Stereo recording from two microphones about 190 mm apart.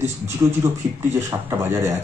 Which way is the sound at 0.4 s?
20° right (ahead or behind).